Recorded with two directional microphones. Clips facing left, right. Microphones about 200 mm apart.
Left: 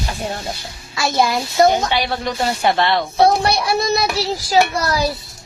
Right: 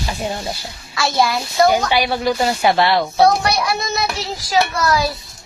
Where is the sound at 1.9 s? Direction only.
5° right (ahead or behind).